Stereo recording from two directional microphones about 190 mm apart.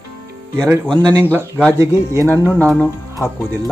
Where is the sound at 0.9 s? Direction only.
20° right (ahead or behind).